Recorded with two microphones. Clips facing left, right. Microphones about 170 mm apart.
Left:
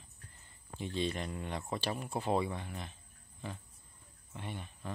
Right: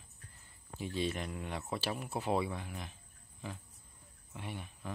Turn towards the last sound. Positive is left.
turn(degrees=-10)  # may be behind; listen again after turning